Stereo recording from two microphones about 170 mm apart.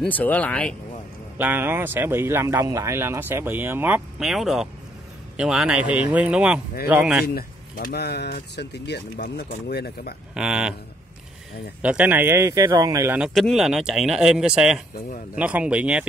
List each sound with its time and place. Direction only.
0.0 s speech: 10° left (ahead or behind)
1.4 s speech: 10° right (ahead or behind)
7.2 s speech: 65° left (ahead or behind)
10.3 s speech: 5° right (ahead or behind)
11.8 s speech: 10° right (ahead or behind)
13.3 s speech: centre (ahead or behind)